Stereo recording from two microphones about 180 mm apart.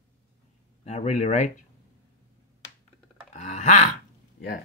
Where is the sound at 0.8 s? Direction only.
35° left (ahead or behind).